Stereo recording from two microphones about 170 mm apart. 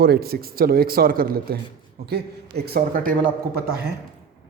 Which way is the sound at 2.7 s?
55° right (ahead or behind).